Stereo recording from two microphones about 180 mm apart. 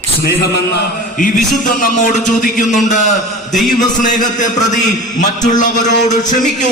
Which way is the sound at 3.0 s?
40° left (ahead or behind).